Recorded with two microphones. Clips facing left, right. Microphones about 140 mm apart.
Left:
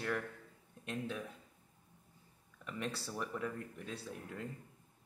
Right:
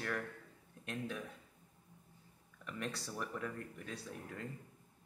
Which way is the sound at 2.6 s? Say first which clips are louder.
Left 2 dB; centre (ahead or behind).